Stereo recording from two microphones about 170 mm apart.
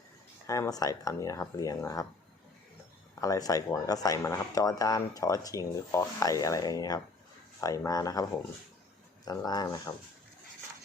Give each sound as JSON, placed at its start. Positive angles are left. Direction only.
{"t": 0.4, "sound": "speech", "side_deg": 20}
{"t": 3.2, "sound": "speech", "side_deg": 20}